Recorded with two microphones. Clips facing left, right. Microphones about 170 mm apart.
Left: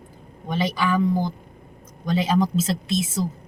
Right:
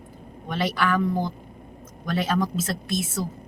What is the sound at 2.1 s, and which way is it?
Speech, 20° left (ahead or behind).